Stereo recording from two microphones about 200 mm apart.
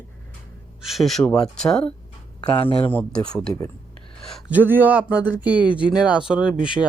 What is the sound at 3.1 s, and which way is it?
Speech, 20° left (ahead or behind).